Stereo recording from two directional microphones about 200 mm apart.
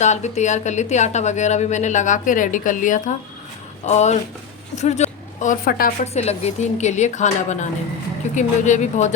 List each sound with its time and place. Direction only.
0.0 s a woman's voice: 35° left (ahead or behind)